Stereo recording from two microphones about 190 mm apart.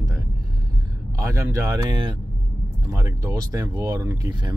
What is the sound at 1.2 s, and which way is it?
Speech, 15° right (ahead or behind).